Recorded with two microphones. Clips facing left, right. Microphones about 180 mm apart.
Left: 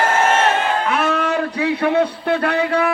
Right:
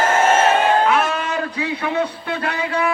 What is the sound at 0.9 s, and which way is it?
A man's voice, 60° left (ahead or behind).